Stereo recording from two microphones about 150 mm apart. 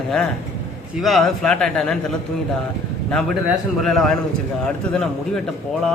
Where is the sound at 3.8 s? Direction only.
Centre (ahead or behind).